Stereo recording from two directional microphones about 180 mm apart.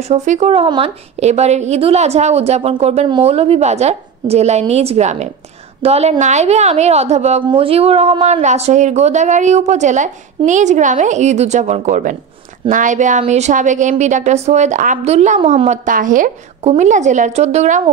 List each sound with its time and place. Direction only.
0.1 s a woman's voice: 40° right (ahead or behind)